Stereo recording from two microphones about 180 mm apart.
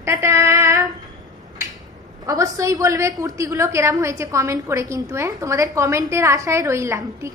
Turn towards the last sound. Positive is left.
turn(degrees=-15)  # may be behind; listen again after turning